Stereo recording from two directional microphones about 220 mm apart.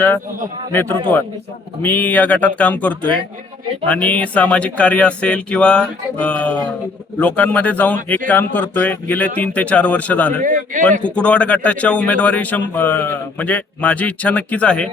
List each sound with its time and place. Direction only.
0.7 s speech: 10° left (ahead or behind)
10.4 s speech: 35° right (ahead or behind)
11.0 s speech: 5° left (ahead or behind)